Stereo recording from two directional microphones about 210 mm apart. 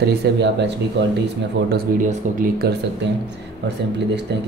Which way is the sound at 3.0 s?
60° right (ahead or behind).